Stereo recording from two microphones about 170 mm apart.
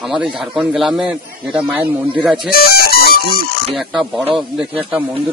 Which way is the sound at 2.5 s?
65° left (ahead or behind).